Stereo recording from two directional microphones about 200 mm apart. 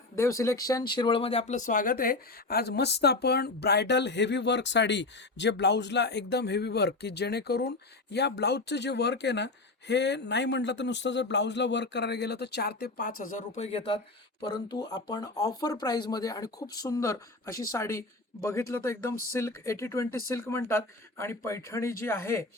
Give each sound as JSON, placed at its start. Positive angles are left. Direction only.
{"t": 0.2, "sound": "speech", "side_deg": 15}